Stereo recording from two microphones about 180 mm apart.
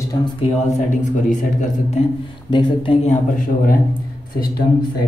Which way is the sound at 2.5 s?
25° left (ahead or behind).